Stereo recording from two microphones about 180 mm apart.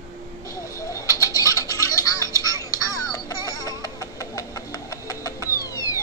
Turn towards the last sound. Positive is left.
turn(degrees=20)  # may be behind; listen again after turning